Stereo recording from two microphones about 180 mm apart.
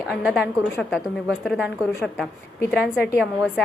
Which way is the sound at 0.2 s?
Centre (ahead or behind).